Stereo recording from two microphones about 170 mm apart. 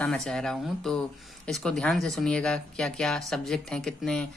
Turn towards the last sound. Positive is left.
turn(degrees=5)  # may be behind; listen again after turning